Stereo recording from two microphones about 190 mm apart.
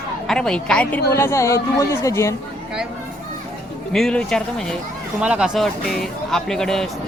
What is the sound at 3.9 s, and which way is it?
Speech, centre (ahead or behind).